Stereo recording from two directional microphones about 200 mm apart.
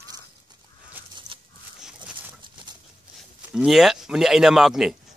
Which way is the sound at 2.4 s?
25° right (ahead or behind).